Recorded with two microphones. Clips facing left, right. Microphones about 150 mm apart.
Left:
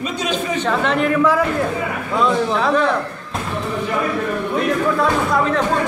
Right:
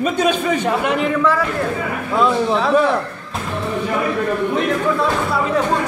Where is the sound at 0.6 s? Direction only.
10° right (ahead or behind).